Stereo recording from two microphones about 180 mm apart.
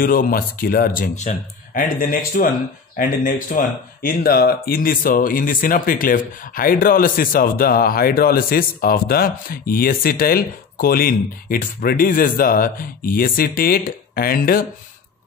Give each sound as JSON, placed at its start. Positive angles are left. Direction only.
{"t": 0.0, "sound": "speech", "side_deg": 50}